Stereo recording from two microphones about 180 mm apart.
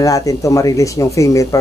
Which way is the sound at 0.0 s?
20° left (ahead or behind).